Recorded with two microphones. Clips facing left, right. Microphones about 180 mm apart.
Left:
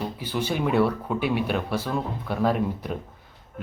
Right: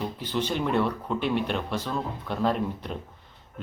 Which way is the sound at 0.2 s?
10° left (ahead or behind).